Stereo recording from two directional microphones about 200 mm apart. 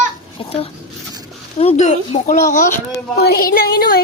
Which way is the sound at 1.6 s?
30° left (ahead or behind).